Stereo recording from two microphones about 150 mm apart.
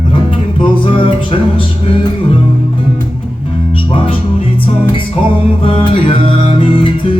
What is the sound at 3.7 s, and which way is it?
Music, 35° left (ahead or behind).